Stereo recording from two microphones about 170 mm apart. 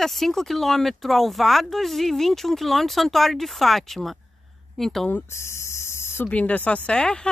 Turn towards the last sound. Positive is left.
turn(degrees=5)  # may be behind; listen again after turning